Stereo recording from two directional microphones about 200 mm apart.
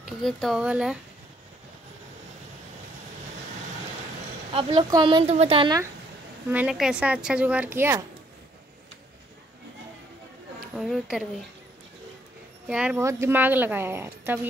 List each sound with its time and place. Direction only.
0.0 s speech: centre (ahead or behind)
4.5 s speech: 25° right (ahead or behind)
6.5 s a woman's voice: 5° right (ahead or behind)
10.7 s speech: centre (ahead or behind)
12.6 s a woman's voice: 5° right (ahead or behind)